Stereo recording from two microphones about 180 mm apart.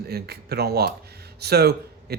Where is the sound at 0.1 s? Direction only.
60° right (ahead or behind).